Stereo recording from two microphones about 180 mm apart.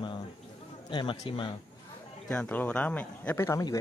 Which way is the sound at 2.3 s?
5° left (ahead or behind).